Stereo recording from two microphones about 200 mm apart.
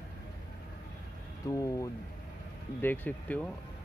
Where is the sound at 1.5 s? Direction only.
15° left (ahead or behind).